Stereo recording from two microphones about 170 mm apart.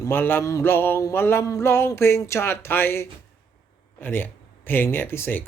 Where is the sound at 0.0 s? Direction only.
10° left (ahead or behind).